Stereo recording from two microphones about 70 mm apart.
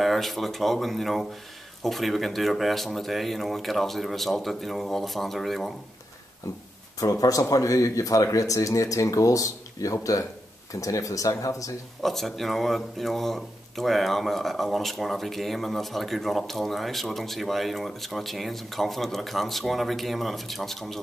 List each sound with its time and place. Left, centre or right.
0.0 s speech: centre
7.0 s speech: left
12.0 s speech: centre